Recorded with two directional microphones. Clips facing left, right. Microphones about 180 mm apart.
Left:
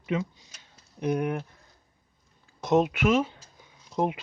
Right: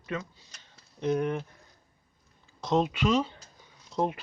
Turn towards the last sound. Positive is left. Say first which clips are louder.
# left 2 dB
turn(degrees=15)  # may be behind; listen again after turning